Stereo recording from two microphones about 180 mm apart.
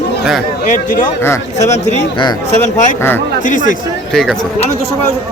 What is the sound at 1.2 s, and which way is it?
Speech, 15° left (ahead or behind).